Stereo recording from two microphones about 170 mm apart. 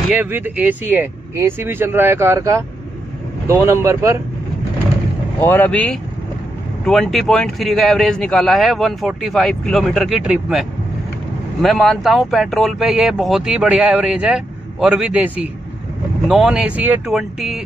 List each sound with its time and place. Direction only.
0.1 s speech: 10° right (ahead or behind)
5.4 s a man's voice: 10° left (ahead or behind)